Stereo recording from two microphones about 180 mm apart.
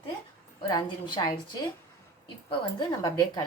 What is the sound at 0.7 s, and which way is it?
Speech, 25° left (ahead or behind).